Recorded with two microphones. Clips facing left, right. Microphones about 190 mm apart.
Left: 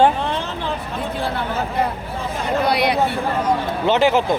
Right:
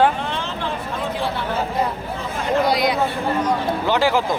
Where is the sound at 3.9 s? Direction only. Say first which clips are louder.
Left 3 dB; 20° left (ahead or behind).